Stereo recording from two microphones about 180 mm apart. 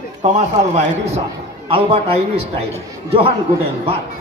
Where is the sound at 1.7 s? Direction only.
35° right (ahead or behind).